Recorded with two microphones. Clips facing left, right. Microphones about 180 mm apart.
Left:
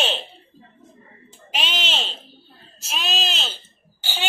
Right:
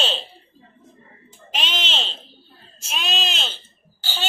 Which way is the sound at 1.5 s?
10° left (ahead or behind).